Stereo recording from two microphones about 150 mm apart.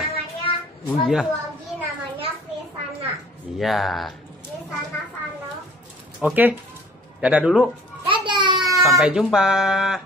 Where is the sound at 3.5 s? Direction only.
Centre (ahead or behind).